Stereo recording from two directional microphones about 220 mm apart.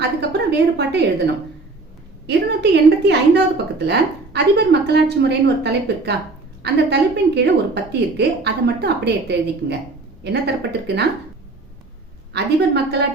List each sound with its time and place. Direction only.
0.2 s a woman's voice: 50° right (ahead or behind)
2.2 s a woman's voice: 50° right (ahead or behind)
12.3 s a woman's voice: 50° right (ahead or behind)